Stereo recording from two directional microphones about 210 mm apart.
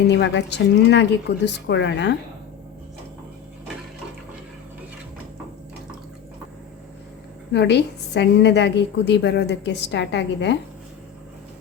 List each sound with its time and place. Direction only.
0.1 s a woman's voice: 55° left (ahead or behind)
7.5 s a woman's voice: 55° left (ahead or behind)